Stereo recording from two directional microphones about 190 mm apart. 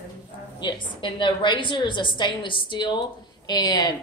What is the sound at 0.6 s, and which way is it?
A woman's voice, 25° left (ahead or behind).